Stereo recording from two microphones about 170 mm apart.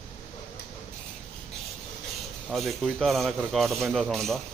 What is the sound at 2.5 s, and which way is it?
Speech, centre (ahead or behind).